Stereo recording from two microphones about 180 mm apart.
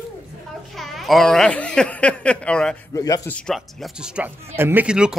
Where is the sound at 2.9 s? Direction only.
20° left (ahead or behind).